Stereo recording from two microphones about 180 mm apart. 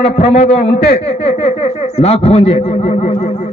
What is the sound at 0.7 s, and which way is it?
Speech, 60° left (ahead or behind).